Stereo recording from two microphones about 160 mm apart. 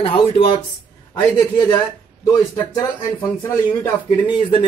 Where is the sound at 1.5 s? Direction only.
25° left (ahead or behind).